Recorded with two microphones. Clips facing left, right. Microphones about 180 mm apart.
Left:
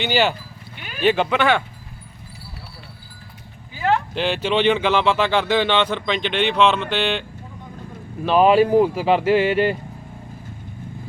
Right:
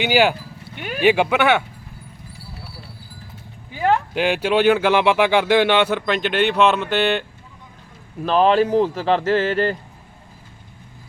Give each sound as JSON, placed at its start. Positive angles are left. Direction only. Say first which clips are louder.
{"t": 0.0, "sound": "speech", "louder": "right 3 dB", "side_deg": -10}
{"t": 0.8, "sound": "speech", "louder": "right 9 dB", "side_deg": -60}
{"t": 1.0, "sound": "speech", "louder": "right 2 dB", "side_deg": -10}
{"t": 4.1, "sound": "speech", "louder": "right 2 dB", "side_deg": -10}
{"t": 8.2, "sound": "speech", "louder": "left 1 dB", "side_deg": 5}